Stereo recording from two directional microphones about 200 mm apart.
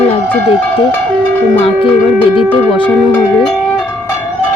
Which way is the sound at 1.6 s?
25° left (ahead or behind).